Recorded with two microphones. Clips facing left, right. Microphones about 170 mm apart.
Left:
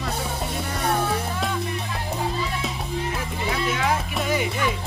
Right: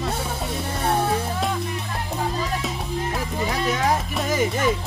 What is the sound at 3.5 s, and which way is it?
Music, 40° right (ahead or behind).